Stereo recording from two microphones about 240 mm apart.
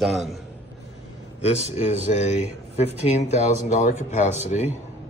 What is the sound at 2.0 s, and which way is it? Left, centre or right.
Speech, left.